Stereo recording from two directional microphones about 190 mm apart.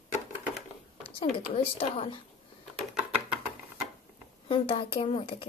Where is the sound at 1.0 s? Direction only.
30° left (ahead or behind).